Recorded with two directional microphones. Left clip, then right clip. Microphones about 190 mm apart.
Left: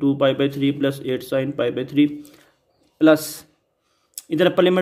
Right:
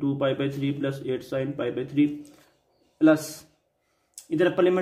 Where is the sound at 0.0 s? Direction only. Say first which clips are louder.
Left 7 dB; 45° left (ahead or behind).